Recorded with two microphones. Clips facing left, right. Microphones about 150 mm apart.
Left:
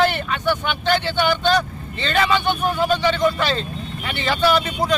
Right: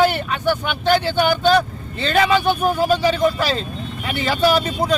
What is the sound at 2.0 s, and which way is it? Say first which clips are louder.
Speech: right 3 dB; 5° right (ahead or behind).